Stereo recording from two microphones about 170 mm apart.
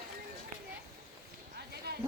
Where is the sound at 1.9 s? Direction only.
65° right (ahead or behind).